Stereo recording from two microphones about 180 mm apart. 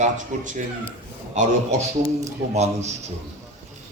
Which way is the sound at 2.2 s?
40° right (ahead or behind).